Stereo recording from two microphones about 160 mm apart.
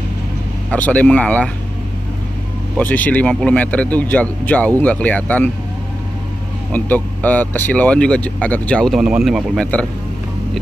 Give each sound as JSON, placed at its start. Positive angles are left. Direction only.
{"t": 0.7, "sound": "speech", "side_deg": 10}
{"t": 2.8, "sound": "speech", "side_deg": 10}
{"t": 6.7, "sound": "speech", "side_deg": 10}